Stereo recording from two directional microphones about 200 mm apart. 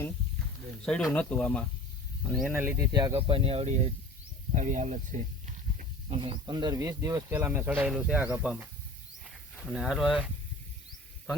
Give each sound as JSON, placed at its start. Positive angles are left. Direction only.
{"t": 0.9, "sound": "speech", "side_deg": 5}
{"t": 2.5, "sound": "speech", "side_deg": -10}
{"t": 2.9, "sound": "speech", "side_deg": -20}
{"t": 6.1, "sound": "speech", "side_deg": -25}
{"t": 9.2, "sound": "a sound", "side_deg": 0}